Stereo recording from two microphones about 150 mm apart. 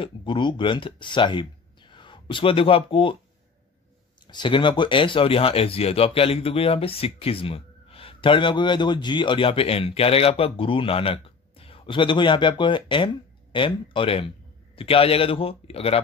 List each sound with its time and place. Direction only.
0.0 s speech: 35° left (ahead or behind)
4.3 s speech: 30° left (ahead or behind)